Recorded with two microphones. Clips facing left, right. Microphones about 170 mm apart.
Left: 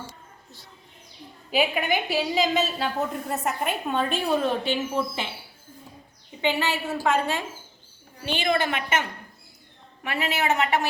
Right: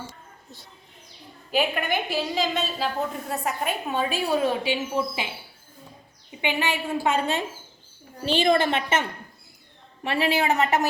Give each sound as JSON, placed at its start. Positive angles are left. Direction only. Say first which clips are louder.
{"t": 1.5, "sound": "a woman's voice", "louder": "left 1 dB", "side_deg": 0}
{"t": 6.4, "sound": "a woman's voice", "louder": "left 1 dB", "side_deg": -15}
{"t": 8.7, "sound": "a woman's voice", "louder": "right 2 dB", "side_deg": -25}